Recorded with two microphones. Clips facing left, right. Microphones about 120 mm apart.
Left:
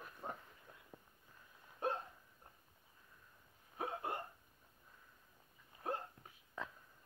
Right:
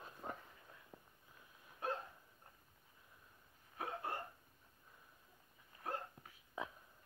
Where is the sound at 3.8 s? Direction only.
15° left (ahead or behind).